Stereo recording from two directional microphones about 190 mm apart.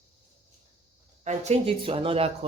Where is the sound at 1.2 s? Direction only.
35° right (ahead or behind).